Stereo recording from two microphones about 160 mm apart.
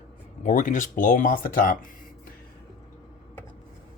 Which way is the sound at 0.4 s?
55° left (ahead or behind).